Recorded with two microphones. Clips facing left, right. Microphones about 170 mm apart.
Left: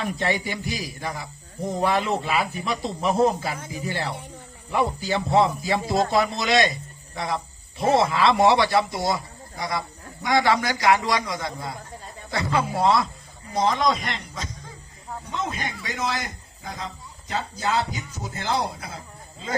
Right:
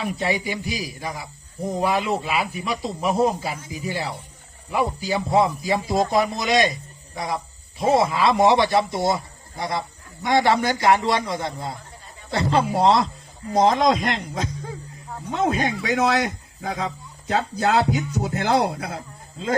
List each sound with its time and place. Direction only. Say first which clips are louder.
0.0 s speech: right 1 dB; 10° right (ahead or behind)
7.8 s speech: right 1 dB; 5° right (ahead or behind)
8.2 s a man's voice: even; 15° right (ahead or behind); by 13.8 s 45° right (ahead or behind)
14.3 s music: right 8 dB; 60° right (ahead or behind)
15.3 s speech: right 9 dB; 70° right (ahead or behind)